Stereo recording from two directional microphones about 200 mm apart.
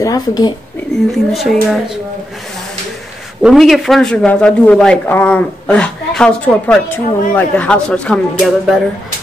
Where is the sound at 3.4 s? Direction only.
Centre (ahead or behind).